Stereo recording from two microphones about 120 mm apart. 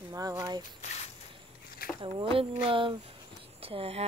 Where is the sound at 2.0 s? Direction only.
50° right (ahead or behind).